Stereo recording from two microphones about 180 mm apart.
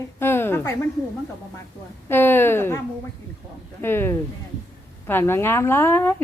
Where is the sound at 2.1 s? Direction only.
10° left (ahead or behind).